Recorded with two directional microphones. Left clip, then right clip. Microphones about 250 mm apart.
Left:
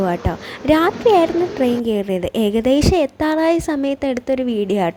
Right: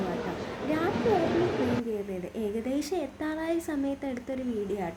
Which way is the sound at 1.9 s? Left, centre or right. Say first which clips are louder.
Left 14 dB; left.